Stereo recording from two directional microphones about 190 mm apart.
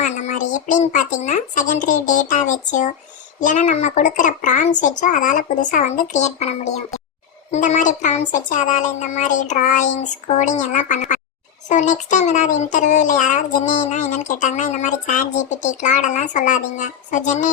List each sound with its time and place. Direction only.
0.0 s speech: 40° left (ahead or behind)